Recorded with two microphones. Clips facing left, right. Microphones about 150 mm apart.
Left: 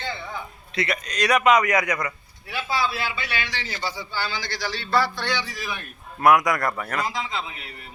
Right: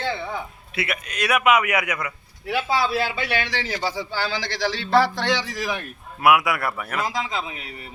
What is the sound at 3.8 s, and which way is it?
A man's voice, 90° right.